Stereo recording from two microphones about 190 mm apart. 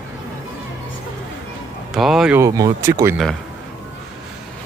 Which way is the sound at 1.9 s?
Centre (ahead or behind).